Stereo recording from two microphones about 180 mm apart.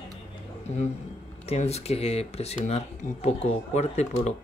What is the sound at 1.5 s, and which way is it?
Speech, 35° left (ahead or behind).